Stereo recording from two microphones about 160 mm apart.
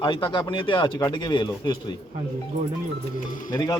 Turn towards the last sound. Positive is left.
turn(degrees=25)  # may be behind; listen again after turning